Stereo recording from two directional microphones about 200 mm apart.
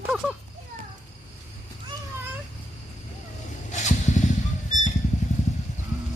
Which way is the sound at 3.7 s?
35° left (ahead or behind).